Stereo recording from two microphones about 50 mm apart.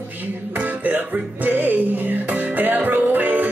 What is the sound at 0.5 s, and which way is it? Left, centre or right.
Music, right.